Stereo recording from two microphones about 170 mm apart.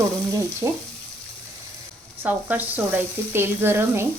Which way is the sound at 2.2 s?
10° right (ahead or behind).